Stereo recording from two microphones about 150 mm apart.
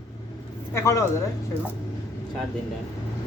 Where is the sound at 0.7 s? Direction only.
20° left (ahead or behind).